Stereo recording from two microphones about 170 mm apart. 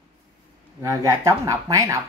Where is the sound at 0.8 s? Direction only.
20° right (ahead or behind).